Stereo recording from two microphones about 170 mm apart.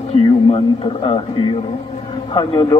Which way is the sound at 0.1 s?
30° left (ahead or behind).